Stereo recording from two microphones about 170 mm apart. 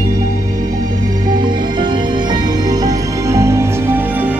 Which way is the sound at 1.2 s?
25° right (ahead or behind).